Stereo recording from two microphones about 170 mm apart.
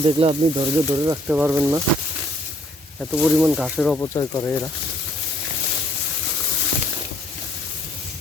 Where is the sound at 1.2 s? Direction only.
10° right (ahead or behind).